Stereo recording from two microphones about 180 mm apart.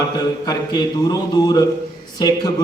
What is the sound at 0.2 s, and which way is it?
A man's voice, 20° left (ahead or behind).